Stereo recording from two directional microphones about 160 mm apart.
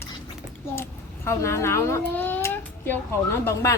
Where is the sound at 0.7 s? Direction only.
15° left (ahead or behind).